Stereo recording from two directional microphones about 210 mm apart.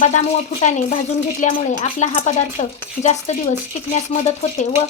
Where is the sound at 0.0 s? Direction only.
35° left (ahead or behind).